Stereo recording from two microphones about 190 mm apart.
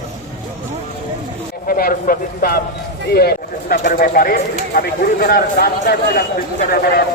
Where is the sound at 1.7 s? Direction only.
50° left (ahead or behind).